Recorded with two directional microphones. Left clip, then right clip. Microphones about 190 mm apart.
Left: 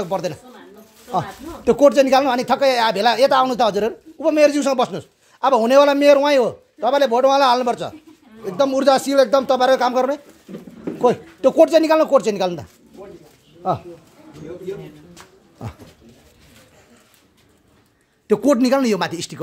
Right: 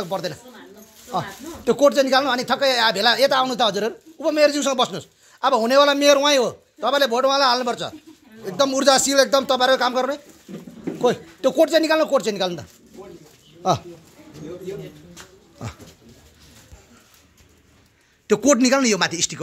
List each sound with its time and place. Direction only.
0.0 s speech: 35° left (ahead or behind)
8.5 s speech: 20° left (ahead or behind)
13.6 s speech: 10° right (ahead or behind)
18.2 s speech: 15° left (ahead or behind)